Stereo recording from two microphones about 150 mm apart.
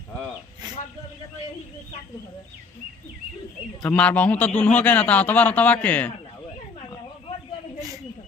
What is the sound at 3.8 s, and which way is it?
A man's voice, 10° left (ahead or behind).